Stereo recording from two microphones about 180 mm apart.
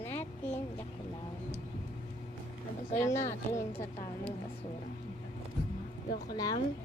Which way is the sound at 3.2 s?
40° left (ahead or behind).